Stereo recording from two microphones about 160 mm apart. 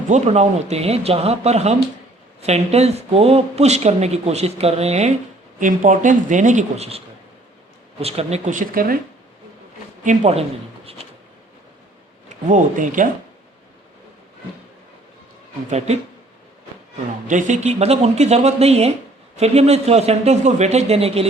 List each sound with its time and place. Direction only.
0.1 s speech: 45° right (ahead or behind)
5.5 s speech: 55° right (ahead or behind)
10.0 s speech: 45° right (ahead or behind)
12.3 s speech: 50° right (ahead or behind)
17.2 s speech: 50° right (ahead or behind)